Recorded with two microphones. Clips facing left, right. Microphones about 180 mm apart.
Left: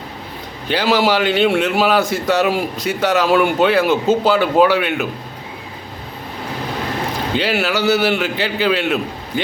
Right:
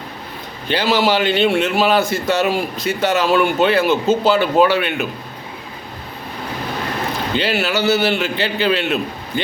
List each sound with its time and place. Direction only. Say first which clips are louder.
0.7 s speech: left 1 dB; 10° left (ahead or behind)
7.3 s speech: left 1 dB; 10° left (ahead or behind)